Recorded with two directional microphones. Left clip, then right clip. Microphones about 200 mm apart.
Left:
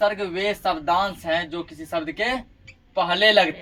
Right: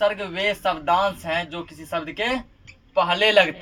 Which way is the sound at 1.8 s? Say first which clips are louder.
Even; 20° right (ahead or behind).